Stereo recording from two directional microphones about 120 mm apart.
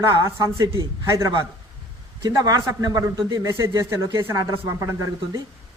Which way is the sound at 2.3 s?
30° right (ahead or behind).